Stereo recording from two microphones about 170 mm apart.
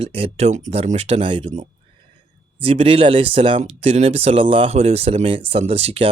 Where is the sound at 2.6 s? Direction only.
30° right (ahead or behind).